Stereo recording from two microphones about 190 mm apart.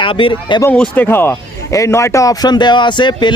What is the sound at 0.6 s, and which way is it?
A man's voice, 10° left (ahead or behind).